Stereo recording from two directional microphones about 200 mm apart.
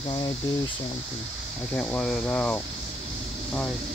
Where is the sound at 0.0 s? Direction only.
20° left (ahead or behind).